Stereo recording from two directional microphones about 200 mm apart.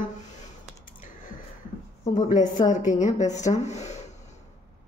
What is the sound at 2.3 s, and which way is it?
Speech, 40° left (ahead or behind).